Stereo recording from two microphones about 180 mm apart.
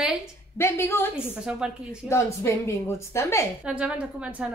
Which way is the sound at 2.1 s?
15° left (ahead or behind).